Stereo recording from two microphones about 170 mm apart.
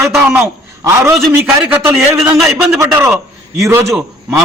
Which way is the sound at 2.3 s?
Centre (ahead or behind).